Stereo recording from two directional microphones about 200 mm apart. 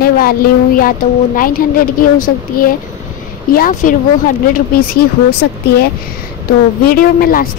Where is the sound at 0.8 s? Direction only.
45° left (ahead or behind).